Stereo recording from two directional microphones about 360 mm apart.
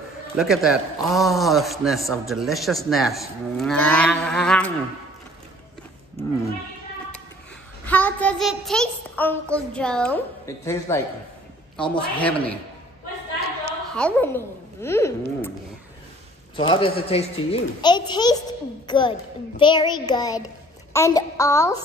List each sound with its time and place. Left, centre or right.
0.4 s a man's voice: centre
7.8 s a man's voice: centre
13.7 s a woman's voice: centre
16.5 s a child's voice: centre